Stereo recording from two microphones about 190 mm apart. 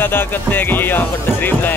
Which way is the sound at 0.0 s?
10° left (ahead or behind).